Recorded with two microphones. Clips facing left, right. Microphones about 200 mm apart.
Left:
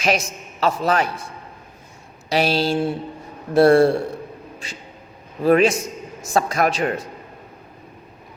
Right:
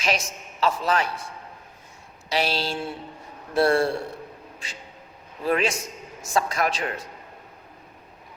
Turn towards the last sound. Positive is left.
turn(degrees=45)  # may be behind; listen again after turning